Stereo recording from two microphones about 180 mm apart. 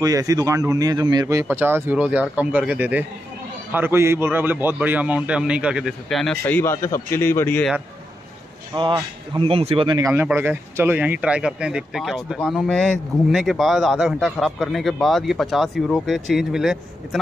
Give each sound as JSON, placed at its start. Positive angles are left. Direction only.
{"t": 0.0, "sound": "speech", "side_deg": -20}
{"t": 8.7, "sound": "speech", "side_deg": -25}